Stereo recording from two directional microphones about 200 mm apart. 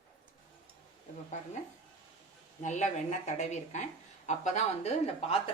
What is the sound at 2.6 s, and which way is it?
Speech, 35° left (ahead or behind).